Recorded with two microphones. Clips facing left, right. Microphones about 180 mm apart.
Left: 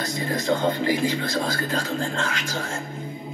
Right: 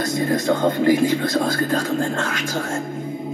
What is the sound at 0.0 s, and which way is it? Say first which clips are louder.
Speech: right 6 dB; 50° right (ahead or behind).